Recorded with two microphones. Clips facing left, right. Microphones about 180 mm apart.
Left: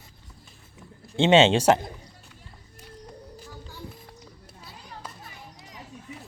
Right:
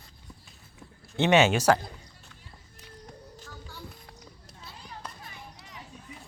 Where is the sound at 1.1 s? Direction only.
25° left (ahead or behind).